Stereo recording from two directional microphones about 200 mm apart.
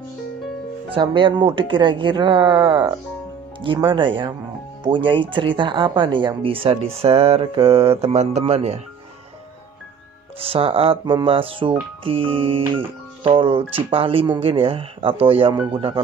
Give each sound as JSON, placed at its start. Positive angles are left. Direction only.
{"t": 0.9, "sound": "speech", "side_deg": -25}
{"t": 10.4, "sound": "speech", "side_deg": -30}